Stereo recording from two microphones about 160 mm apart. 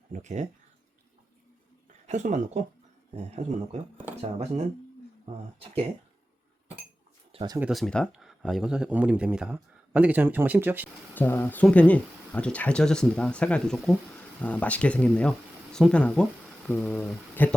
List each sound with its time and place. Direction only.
0.1 s speech: 45° right (ahead or behind)
2.0 s speech: 50° right (ahead or behind)
3.9 s speech: 15° right (ahead or behind)
4.2 s speech: 45° right (ahead or behind)
7.3 s speech: 25° right (ahead or behind)
7.6 s speech: centre (ahead or behind)
11.1 s speech: 15° left (ahead or behind)